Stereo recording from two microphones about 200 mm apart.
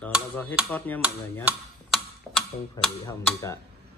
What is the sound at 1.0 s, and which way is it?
Speech, 5° right (ahead or behind).